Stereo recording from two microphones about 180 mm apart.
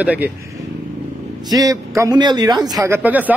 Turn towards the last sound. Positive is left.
turn(degrees=-10)  # may be behind; listen again after turning